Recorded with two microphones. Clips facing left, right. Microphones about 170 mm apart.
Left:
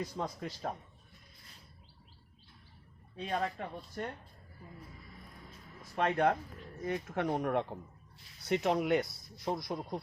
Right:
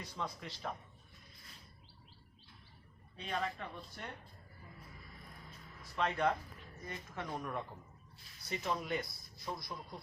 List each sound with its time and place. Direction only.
0.0 s speech: 40° left (ahead or behind)
3.2 s speech: 50° left (ahead or behind)
6.0 s speech: 55° left (ahead or behind)
6.8 s speech: 65° left (ahead or behind)